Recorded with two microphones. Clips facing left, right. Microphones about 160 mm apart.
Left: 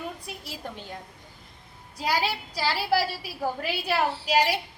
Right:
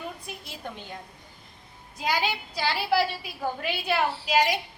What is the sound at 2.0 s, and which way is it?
A woman's voice, 35° left (ahead or behind).